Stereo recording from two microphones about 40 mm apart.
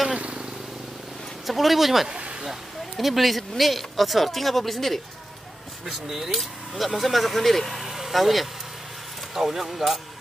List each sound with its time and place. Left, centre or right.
1.5 s speech: centre
2.0 s a sound: right
3.0 s speech: centre
5.9 s speech: centre
6.3 s speech: centre